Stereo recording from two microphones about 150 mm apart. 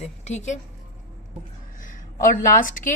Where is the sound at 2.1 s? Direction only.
60° left (ahead or behind).